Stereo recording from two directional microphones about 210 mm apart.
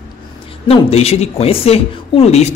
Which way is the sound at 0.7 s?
30° left (ahead or behind).